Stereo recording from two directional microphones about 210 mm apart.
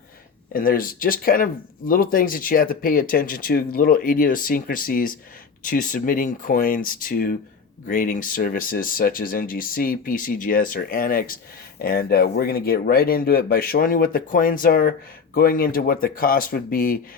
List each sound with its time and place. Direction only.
0.5 s speech: 45° left (ahead or behind)